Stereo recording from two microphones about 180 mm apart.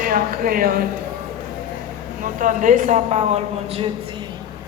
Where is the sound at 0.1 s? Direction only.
55° right (ahead or behind).